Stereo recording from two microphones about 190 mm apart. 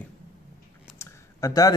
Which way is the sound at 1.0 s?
20° left (ahead or behind).